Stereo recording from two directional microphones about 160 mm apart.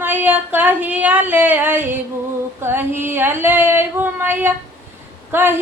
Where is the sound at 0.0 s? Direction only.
10° right (ahead or behind).